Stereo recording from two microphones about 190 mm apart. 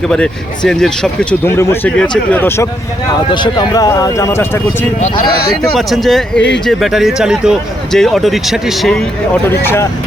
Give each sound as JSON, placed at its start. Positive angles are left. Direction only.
{"t": 0.1, "sound": "speech", "side_deg": 5}
{"t": 3.3, "sound": "speech", "side_deg": 25}
{"t": 5.3, "sound": "speech", "side_deg": 50}
{"t": 5.7, "sound": "speech", "side_deg": 0}
{"t": 9.5, "sound": "speech", "side_deg": 10}